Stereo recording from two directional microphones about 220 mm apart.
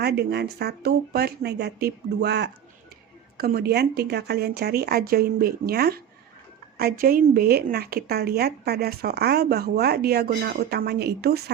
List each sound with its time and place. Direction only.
0.0 s a woman's voice: 45° right (ahead or behind)